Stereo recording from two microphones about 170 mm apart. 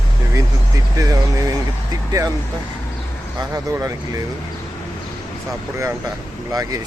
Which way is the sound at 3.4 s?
20° right (ahead or behind).